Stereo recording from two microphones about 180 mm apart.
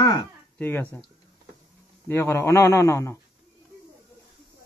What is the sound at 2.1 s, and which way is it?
A man's voice, 15° left (ahead or behind).